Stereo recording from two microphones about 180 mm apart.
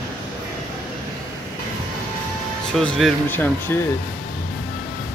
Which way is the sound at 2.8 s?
Centre (ahead or behind).